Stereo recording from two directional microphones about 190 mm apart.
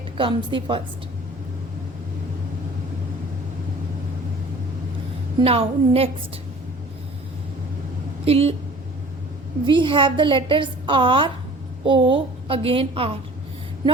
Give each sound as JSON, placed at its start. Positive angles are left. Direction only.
{"t": 0.2, "sound": "a woman's voice", "side_deg": -25}
{"t": 5.4, "sound": "a woman's voice", "side_deg": -30}
{"t": 8.2, "sound": "a woman's voice", "side_deg": -30}
{"t": 9.6, "sound": "a woman's voice", "side_deg": -25}